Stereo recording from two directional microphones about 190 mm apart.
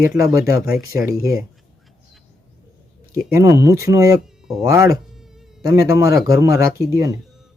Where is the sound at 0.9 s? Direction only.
15° right (ahead or behind).